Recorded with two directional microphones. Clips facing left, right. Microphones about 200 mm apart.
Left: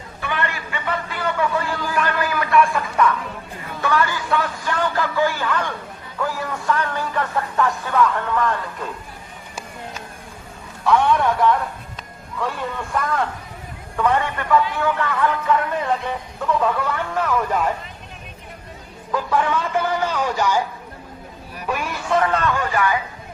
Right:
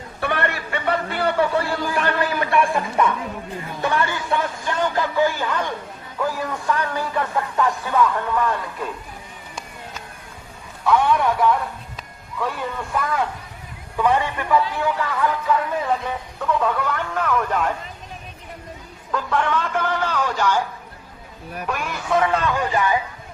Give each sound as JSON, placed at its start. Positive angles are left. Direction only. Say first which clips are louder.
{"t": 0.2, "sound": "a sound", "louder": "right 3 dB", "side_deg": -60}
{"t": 1.0, "sound": "speech", "louder": "right 3 dB", "side_deg": -35}
{"t": 10.8, "sound": "a man's voice", "louder": "left 1 dB", "side_deg": 0}
{"t": 19.1, "sound": "a man's voice", "louder": "left 1 dB", "side_deg": 10}
{"t": 21.7, "sound": "speech", "louder": "left 1 dB", "side_deg": 0}